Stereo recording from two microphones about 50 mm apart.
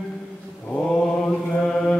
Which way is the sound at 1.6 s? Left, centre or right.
Centre.